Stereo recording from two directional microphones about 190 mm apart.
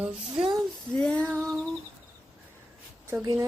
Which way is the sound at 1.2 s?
5° right (ahead or behind).